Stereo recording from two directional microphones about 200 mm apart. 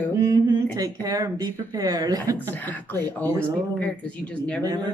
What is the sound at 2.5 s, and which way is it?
Speech, 10° left (ahead or behind).